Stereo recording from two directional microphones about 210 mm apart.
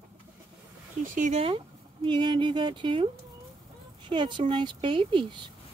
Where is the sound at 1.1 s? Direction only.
35° right (ahead or behind).